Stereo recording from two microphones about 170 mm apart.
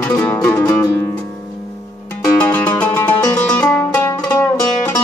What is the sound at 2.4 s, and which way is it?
Music, 10° left (ahead or behind).